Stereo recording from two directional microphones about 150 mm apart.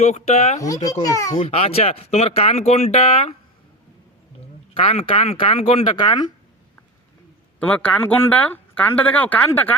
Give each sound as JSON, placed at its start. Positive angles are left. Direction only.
{"t": 0.0, "sound": "speech", "side_deg": 45}
{"t": 0.6, "sound": "speech", "side_deg": 25}
{"t": 1.4, "sound": "speech", "side_deg": 40}
{"t": 4.7, "sound": "speech", "side_deg": 40}
{"t": 6.0, "sound": "speech", "side_deg": 30}
{"t": 7.7, "sound": "speech", "side_deg": 10}